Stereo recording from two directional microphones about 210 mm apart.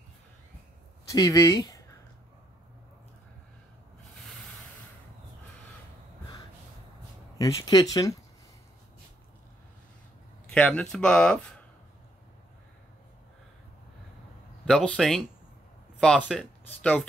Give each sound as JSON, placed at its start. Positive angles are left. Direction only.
{"t": 1.1, "sound": "speech", "side_deg": 15}
{"t": 7.3, "sound": "speech", "side_deg": 15}
{"t": 10.4, "sound": "speech", "side_deg": 5}
{"t": 14.7, "sound": "speech", "side_deg": 0}